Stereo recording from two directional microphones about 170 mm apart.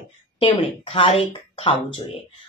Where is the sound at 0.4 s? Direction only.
35° left (ahead or behind).